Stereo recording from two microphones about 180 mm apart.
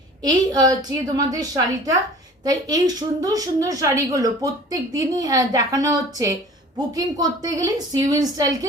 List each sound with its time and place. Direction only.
0.2 s a woman's voice: 20° right (ahead or behind)